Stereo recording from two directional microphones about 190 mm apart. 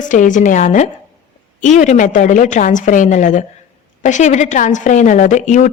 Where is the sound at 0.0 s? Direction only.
40° left (ahead or behind).